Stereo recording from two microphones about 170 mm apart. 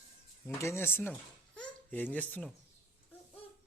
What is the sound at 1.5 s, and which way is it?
Babbling, 10° left (ahead or behind).